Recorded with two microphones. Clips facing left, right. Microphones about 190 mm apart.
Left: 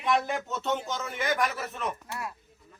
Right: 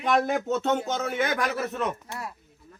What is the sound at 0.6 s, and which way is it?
Speech, 65° right (ahead or behind).